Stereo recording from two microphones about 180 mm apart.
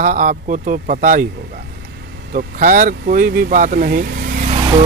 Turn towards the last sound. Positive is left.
turn(degrees=-45)  # may be behind; listen again after turning